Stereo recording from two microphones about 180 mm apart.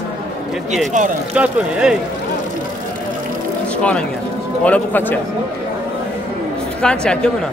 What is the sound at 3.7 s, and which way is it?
A man's voice, 5° left (ahead or behind).